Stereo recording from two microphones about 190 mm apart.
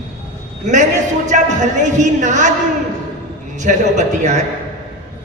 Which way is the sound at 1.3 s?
40° right (ahead or behind).